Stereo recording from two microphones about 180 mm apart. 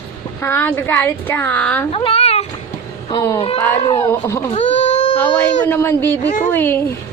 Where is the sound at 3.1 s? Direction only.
20° left (ahead or behind).